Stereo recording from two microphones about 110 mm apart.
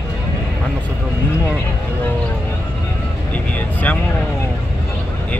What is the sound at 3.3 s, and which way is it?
Speech, 15° left (ahead or behind).